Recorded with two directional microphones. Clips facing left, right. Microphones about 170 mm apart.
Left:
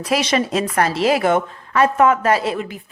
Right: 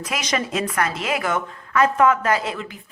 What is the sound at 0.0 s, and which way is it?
A woman's voice, 30° left (ahead or behind).